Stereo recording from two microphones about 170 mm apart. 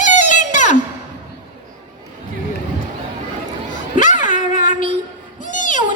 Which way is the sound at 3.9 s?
50° left (ahead or behind).